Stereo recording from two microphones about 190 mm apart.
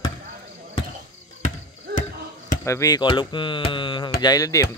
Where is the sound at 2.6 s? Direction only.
15° left (ahead or behind).